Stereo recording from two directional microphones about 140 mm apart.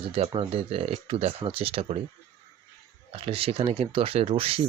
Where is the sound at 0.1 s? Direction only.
40° right (ahead or behind).